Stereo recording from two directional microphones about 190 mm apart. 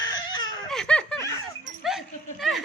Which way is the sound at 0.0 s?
20° left (ahead or behind).